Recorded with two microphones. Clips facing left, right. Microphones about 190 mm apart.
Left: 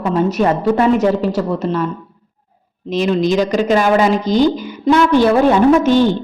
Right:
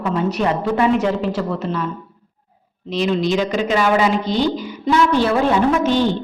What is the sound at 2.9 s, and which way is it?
A woman's voice, 45° left (ahead or behind).